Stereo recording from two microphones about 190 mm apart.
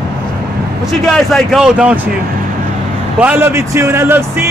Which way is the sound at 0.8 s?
Centre (ahead or behind).